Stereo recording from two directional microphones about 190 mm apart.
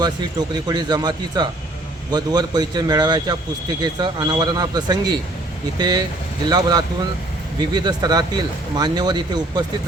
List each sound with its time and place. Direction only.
0.0 s speech: 20° right (ahead or behind)